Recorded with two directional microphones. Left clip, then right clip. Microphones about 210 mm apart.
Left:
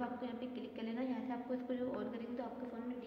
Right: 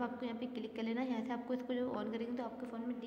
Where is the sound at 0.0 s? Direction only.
40° right (ahead or behind).